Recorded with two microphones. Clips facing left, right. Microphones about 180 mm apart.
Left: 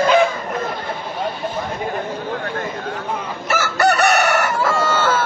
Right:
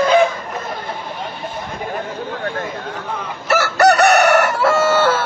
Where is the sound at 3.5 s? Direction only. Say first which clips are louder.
Right 4 dB; 65° right (ahead or behind).